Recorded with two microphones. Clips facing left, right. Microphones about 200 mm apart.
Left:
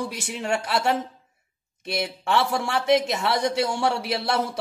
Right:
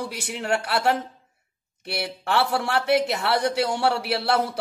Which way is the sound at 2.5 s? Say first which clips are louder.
Even; 60° right (ahead or behind).